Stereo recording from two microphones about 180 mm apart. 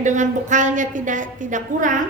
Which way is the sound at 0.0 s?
45° right (ahead or behind).